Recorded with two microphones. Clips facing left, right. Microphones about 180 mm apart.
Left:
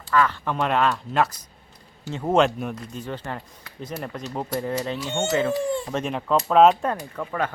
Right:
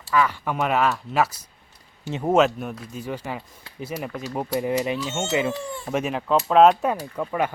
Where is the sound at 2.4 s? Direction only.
Centre (ahead or behind).